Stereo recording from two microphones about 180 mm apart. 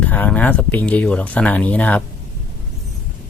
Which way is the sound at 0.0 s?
10° left (ahead or behind).